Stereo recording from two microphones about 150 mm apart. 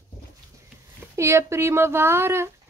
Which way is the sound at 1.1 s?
20° right (ahead or behind).